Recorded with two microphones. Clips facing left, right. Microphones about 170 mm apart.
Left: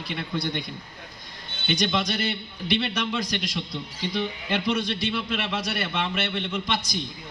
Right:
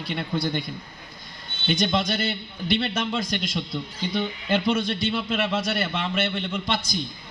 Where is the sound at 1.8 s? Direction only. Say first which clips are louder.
Right 2 dB; 25° right (ahead or behind).